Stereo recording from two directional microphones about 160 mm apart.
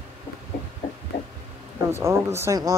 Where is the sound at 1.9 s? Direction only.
15° right (ahead or behind).